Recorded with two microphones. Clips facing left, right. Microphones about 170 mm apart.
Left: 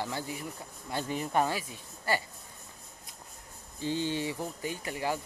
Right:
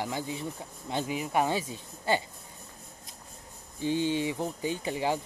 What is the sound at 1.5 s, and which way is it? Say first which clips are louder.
Speech: right 4 dB; 30° right (ahead or behind).